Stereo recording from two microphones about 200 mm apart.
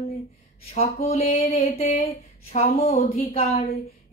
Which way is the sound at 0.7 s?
30° left (ahead or behind).